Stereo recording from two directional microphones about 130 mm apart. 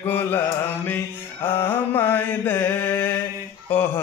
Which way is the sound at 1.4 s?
15° left (ahead or behind).